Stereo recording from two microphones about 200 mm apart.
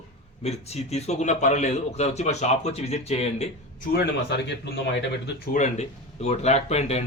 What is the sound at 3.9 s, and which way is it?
Speech, 55° left (ahead or behind).